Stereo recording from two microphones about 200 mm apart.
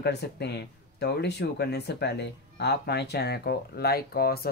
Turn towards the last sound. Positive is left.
turn(degrees=50)  # may be behind; listen again after turning